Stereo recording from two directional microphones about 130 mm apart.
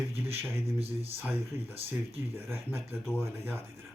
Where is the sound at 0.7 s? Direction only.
50° right (ahead or behind).